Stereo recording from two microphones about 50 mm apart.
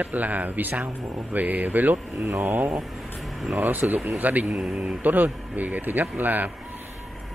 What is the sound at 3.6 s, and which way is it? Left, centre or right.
Speech, right.